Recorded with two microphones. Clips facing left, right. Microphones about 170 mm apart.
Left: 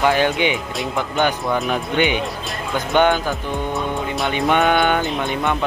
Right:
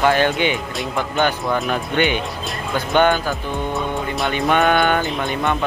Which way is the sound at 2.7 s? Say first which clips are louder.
Even; 15° left (ahead or behind).